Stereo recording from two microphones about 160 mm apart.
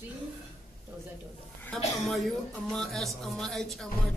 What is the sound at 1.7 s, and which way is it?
Music, 5° left (ahead or behind).